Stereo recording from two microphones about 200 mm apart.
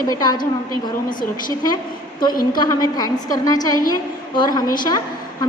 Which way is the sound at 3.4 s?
15° left (ahead or behind).